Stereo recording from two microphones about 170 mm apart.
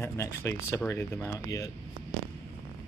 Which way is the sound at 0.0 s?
15° left (ahead or behind).